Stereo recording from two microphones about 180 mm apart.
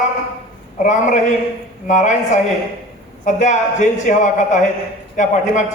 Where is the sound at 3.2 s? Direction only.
45° left (ahead or behind).